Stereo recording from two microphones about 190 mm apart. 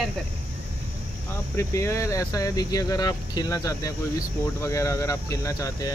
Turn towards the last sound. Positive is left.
turn(degrees=15)  # may be behind; listen again after turning